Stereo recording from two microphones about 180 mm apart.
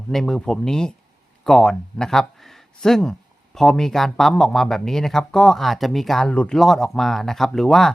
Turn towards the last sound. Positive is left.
turn(degrees=0)  # may be behind; listen again after turning